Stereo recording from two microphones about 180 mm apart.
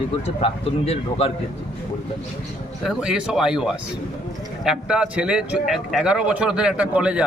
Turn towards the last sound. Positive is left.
turn(degrees=-5)  # may be behind; listen again after turning